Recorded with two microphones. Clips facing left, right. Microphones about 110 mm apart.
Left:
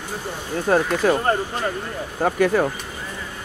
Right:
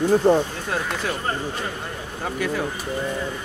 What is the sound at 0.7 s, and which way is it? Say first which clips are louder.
Speech: left 8 dB; 50° left (ahead or behind).